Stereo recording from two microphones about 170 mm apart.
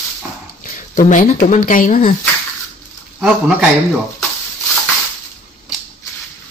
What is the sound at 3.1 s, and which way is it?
Speech, 5° right (ahead or behind).